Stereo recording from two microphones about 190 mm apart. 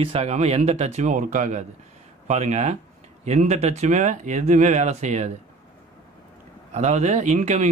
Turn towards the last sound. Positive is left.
turn(degrees=-40)  # may be behind; listen again after turning